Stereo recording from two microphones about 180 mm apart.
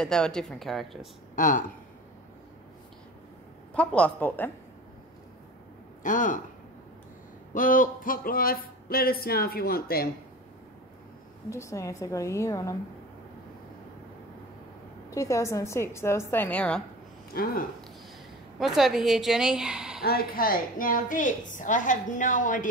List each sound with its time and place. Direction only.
0.0 s a woman's voice: 5° left (ahead or behind)
1.3 s speech: 45° left (ahead or behind)
3.7 s a woman's voice: 5° left (ahead or behind)
6.0 s a woman's voice: 45° left (ahead or behind)
7.5 s speech: 50° left (ahead or behind)
11.5 s a woman's voice: 15° left (ahead or behind)
15.0 s a woman's voice: 15° left (ahead or behind)
17.3 s speech: 55° left (ahead or behind)
18.6 s a woman's voice: centre (ahead or behind)
20.0 s a woman's voice: 55° left (ahead or behind)